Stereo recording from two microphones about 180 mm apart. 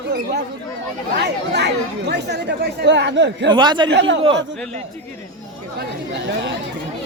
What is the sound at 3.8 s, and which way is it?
Speech, 85° right.